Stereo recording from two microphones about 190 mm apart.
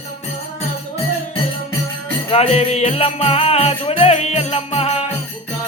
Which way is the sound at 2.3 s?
35° left (ahead or behind).